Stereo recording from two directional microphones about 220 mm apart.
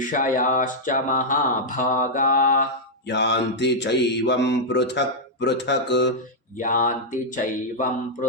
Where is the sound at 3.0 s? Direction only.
50° left (ahead or behind).